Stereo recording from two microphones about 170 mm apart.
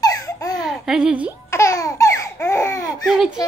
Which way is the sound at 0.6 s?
Centre (ahead or behind).